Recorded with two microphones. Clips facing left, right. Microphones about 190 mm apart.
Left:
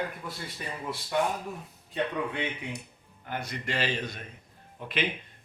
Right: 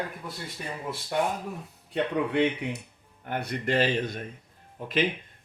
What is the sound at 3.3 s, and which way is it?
Speech, 60° right (ahead or behind).